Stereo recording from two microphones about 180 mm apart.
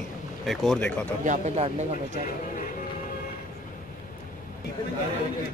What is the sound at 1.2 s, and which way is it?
Speech, 40° right (ahead or behind).